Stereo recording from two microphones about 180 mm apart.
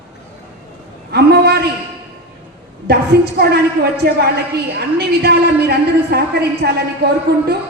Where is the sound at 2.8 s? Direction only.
60° right (ahead or behind).